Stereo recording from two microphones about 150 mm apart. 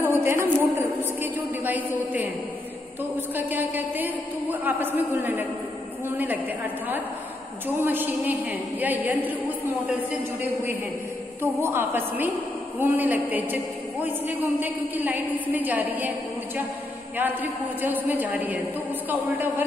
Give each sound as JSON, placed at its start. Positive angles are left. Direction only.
{"t": 0.0, "sound": "a sound", "side_deg": -15}
{"t": 3.3, "sound": "a woman's voice", "side_deg": -10}
{"t": 11.6, "sound": "a woman's voice", "side_deg": -15}